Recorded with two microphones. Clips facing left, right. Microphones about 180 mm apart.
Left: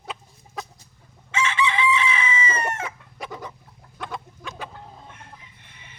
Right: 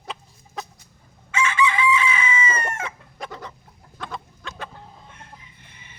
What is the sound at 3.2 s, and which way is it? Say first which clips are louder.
Chicken: left 1 dB; 10° left (ahead or behind).